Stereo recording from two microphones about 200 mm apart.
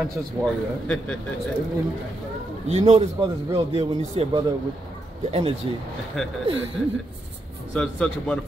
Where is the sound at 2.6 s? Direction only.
30° right (ahead or behind).